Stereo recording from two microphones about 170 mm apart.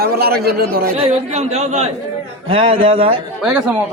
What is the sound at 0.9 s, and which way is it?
Speech, 40° right (ahead or behind).